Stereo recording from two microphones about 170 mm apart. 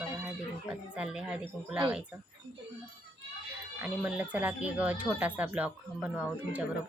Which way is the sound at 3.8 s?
5° right (ahead or behind).